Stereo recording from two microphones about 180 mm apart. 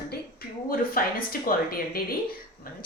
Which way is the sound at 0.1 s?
55° left (ahead or behind).